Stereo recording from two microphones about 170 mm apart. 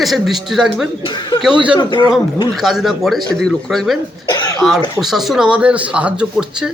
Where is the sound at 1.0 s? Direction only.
25° left (ahead or behind).